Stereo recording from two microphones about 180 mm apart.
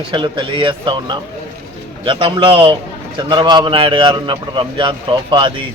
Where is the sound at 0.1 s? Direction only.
25° right (ahead or behind).